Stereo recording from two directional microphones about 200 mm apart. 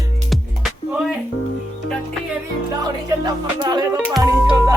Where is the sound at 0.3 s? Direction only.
Centre (ahead or behind).